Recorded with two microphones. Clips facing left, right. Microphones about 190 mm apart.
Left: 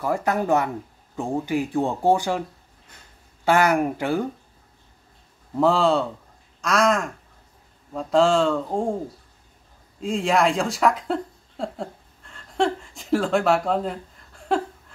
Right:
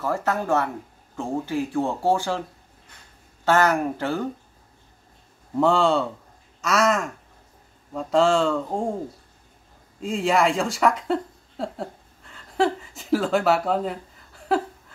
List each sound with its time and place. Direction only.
0.0 s speech: 15° left (ahead or behind)
3.4 s speech: 10° left (ahead or behind)
5.6 s speech: centre (ahead or behind)
9.9 s speech: centre (ahead or behind)